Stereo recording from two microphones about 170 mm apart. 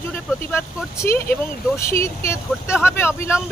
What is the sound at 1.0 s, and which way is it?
Speech, 15° left (ahead or behind).